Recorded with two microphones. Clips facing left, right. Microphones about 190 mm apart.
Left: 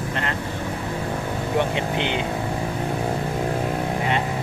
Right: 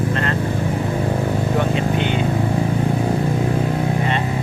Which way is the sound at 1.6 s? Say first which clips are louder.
Even; 20° left (ahead or behind).